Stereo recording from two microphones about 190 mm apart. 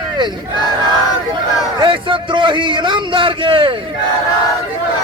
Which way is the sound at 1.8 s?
25° right (ahead or behind).